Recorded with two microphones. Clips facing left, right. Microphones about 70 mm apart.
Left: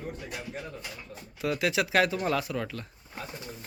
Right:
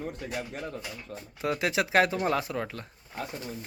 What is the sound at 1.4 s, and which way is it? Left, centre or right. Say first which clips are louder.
Speech: even; right.